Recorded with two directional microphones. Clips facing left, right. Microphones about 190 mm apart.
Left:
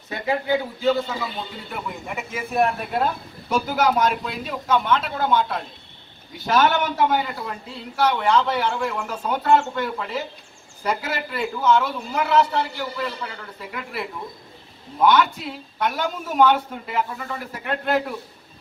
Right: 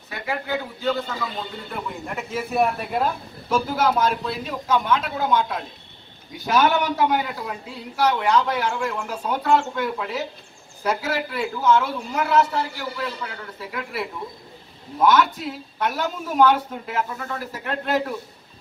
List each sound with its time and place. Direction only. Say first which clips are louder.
0.1 s a sound: left 5 dB; 20° left (ahead or behind)
0.8 s a man's voice: left 3 dB; 10° left (ahead or behind)
4.6 s a man's voice: left 1 dB; 5° right (ahead or behind)
16.0 s a man's voice: even; 5° left (ahead or behind)